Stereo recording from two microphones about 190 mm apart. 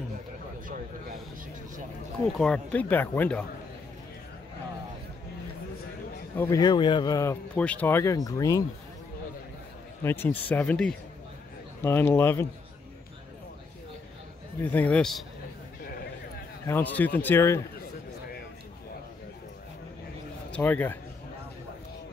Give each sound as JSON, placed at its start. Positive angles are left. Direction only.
{"t": 2.3, "sound": "speech", "side_deg": 5}
{"t": 6.3, "sound": "speech", "side_deg": 15}
{"t": 10.0, "sound": "speech", "side_deg": 10}
{"t": 14.6, "sound": "speech", "side_deg": 10}
{"t": 15.8, "sound": "a sound", "side_deg": 50}
{"t": 16.6, "sound": "a man's voice", "side_deg": 10}
{"t": 20.5, "sound": "speech", "side_deg": 10}